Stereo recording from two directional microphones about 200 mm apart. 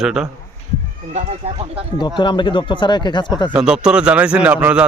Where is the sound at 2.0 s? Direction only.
25° left (ahead or behind).